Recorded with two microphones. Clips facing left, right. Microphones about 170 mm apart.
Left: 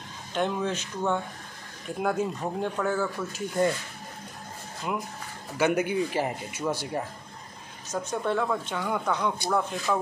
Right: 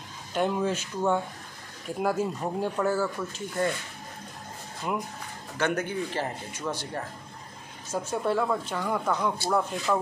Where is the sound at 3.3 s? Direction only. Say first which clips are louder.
Left 4 dB; 15° left (ahead or behind).